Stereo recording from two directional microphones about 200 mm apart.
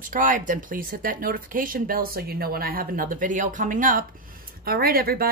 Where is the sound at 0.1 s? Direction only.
40° right (ahead or behind).